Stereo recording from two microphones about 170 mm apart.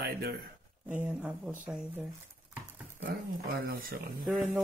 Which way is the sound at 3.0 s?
65° right (ahead or behind).